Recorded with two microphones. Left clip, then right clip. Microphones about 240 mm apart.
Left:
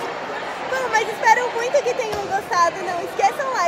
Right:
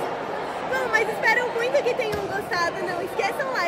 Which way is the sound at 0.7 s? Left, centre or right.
Centre.